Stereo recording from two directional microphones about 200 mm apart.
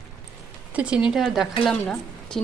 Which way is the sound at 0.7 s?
5° right (ahead or behind).